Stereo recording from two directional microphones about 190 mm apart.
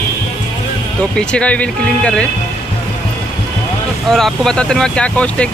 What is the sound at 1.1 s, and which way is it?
Speech, 5° left (ahead or behind).